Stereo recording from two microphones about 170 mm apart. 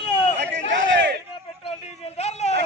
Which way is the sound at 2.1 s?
40° left (ahead or behind).